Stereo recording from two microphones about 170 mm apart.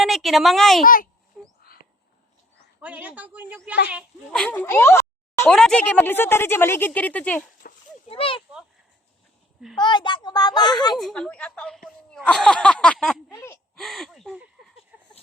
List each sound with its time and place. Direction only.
0.0 s a woman's voice: centre (ahead or behind)
1.4 s wail: centre (ahead or behind)
2.8 s a woman's voice: 10° right (ahead or behind)
4.3 s speech: 5° left (ahead or behind)
5.5 s speech: 5° left (ahead or behind)
7.6 s a sound: 55° left (ahead or behind)
8.1 s a child's voice: 30° left (ahead or behind)
9.6 s a child's voice: centre (ahead or behind)
9.8 s a child's voice: 25° left (ahead or behind)
10.9 s speech: centre (ahead or behind)
13.3 s speech: 15° left (ahead or behind)
13.7 s speech: centre (ahead or behind)